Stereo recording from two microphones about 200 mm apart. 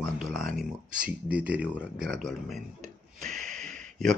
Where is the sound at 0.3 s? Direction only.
Centre (ahead or behind).